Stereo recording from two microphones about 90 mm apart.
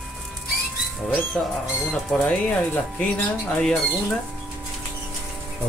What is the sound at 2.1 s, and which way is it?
Speech, 10° left (ahead or behind).